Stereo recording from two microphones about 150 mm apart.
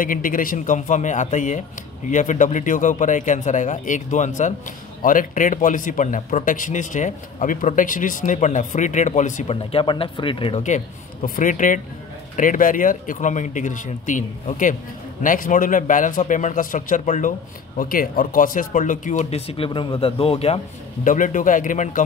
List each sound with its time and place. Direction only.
0.0 s a man's voice: 65° left (ahead or behind); by 10.6 s 35° left (ahead or behind)
11.2 s a man's voice: 60° left (ahead or behind)
17.7 s speech: 75° left (ahead or behind); by 20.6 s 40° left (ahead or behind)
21.0 s a man's voice: 60° left (ahead or behind)